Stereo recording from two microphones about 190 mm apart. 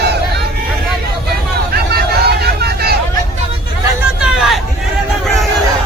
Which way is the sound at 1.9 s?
55° right (ahead or behind).